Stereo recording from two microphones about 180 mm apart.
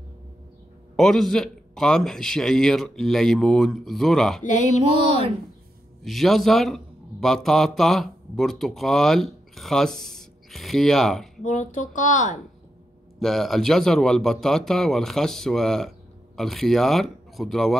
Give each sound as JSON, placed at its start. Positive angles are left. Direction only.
{"t": 0.9, "sound": "a man's voice", "side_deg": 0}
{"t": 6.0, "sound": "speech", "side_deg": 0}
{"t": 11.4, "sound": "speech", "side_deg": 45}
{"t": 13.2, "sound": "a man's voice", "side_deg": 0}